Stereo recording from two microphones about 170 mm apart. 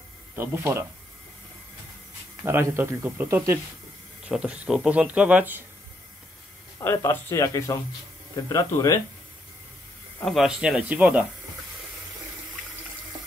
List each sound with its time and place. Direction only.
0.4 s speech: 15° right (ahead or behind)
2.4 s speech: 15° right (ahead or behind)
6.8 s speech: 15° left (ahead or behind)
10.2 s speech: centre (ahead or behind)